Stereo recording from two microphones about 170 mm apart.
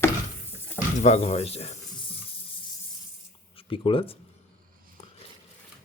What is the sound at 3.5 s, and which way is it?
Speech, 30° left (ahead or behind).